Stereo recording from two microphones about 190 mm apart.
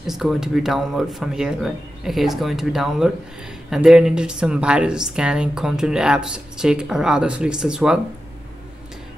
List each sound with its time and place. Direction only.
0.0 s speech: centre (ahead or behind)